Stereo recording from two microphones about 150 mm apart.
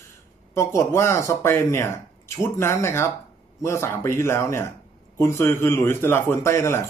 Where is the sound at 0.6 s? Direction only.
20° left (ahead or behind).